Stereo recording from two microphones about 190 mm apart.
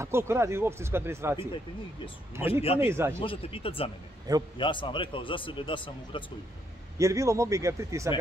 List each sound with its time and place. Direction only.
0.0 s speech: 15° right (ahead or behind)
3.2 s speech: 30° left (ahead or behind)
7.0 s speech: 15° right (ahead or behind)